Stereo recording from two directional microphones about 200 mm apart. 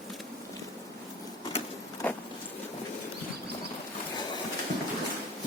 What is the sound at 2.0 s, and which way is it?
Vehicle, 10° left (ahead or behind).